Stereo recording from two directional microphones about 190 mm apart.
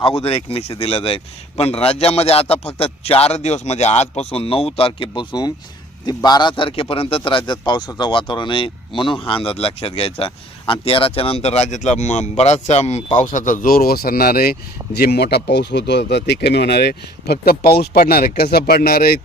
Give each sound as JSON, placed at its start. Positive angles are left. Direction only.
{"t": 0.0, "sound": "a man's voice", "side_deg": 30}